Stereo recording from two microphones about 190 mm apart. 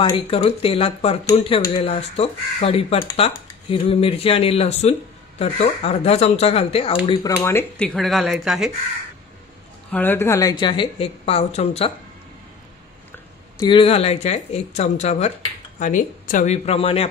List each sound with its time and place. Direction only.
0.3 s a woman's voice: 30° left (ahead or behind)
7.1 s speech: 15° left (ahead or behind)
7.9 s speech: centre (ahead or behind)
9.8 s a woman's voice: 10° left (ahead or behind); by 11.9 s 35° left (ahead or behind)
13.6 s speech: 25° left (ahead or behind)